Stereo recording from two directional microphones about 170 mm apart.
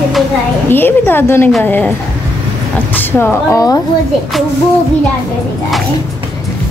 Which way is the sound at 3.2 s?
20° left (ahead or behind).